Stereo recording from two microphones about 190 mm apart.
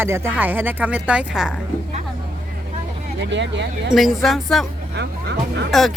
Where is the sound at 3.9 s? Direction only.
Centre (ahead or behind).